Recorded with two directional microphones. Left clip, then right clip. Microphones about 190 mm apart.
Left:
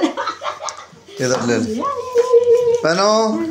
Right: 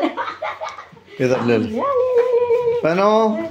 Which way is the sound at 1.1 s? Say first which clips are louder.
Even; 25° right (ahead or behind).